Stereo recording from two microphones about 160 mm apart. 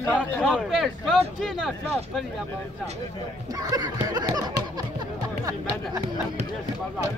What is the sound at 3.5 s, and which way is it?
Speech, 25° right (ahead or behind).